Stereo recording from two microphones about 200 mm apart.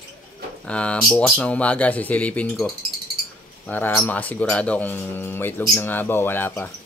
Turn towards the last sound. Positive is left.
turn(degrees=10)  # may be behind; listen again after turning